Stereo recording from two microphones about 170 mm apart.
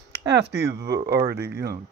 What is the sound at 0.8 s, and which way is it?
Speech, 70° right (ahead or behind).